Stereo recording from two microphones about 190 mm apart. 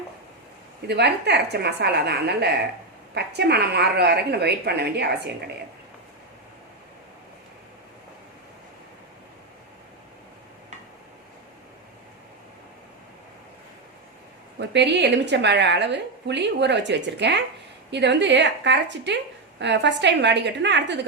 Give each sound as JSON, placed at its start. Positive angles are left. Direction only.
{"t": 0.9, "sound": "a woman's voice", "side_deg": -60}
{"t": 14.6, "sound": "a woman's voice", "side_deg": -65}